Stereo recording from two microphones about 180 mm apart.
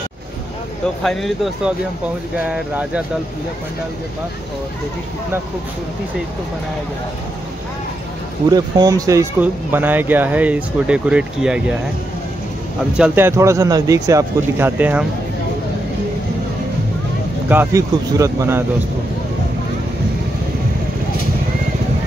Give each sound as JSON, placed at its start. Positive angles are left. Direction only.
{"t": 1.0, "sound": "speech", "side_deg": 0}
{"t": 8.5, "sound": "speech", "side_deg": -20}
{"t": 12.9, "sound": "speech", "side_deg": -10}
{"t": 17.5, "sound": "speech", "side_deg": -15}